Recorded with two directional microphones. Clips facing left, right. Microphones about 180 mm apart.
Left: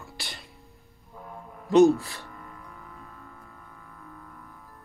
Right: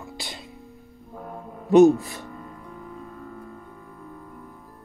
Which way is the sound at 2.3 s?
25° right (ahead or behind).